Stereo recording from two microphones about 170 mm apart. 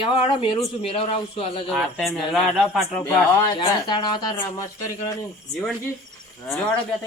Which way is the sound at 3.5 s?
25° left (ahead or behind).